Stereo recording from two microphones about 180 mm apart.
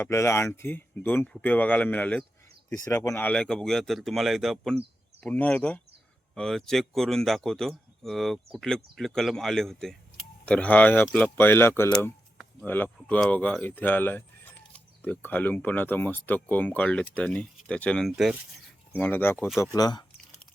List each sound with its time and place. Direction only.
0.0 s speech: 15° left (ahead or behind); by 18.3 s centre (ahead or behind)
18.9 s speech: 10° left (ahead or behind)
19.7 s speech: 20° left (ahead or behind)